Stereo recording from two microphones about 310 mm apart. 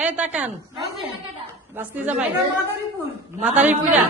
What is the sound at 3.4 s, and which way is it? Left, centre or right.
Speech, centre.